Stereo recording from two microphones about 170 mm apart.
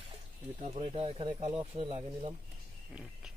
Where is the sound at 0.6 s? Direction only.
35° right (ahead or behind).